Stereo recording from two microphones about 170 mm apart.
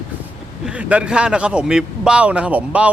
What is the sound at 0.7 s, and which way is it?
A man's voice, 5° right (ahead or behind).